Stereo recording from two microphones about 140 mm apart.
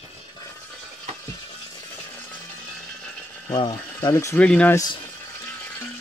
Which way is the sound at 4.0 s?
20° left (ahead or behind).